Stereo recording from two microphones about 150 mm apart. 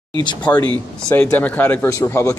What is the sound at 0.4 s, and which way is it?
A man's voice, 10° left (ahead or behind).